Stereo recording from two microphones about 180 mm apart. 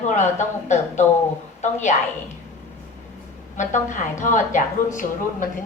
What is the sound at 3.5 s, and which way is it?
A woman's voice, 45° left (ahead or behind).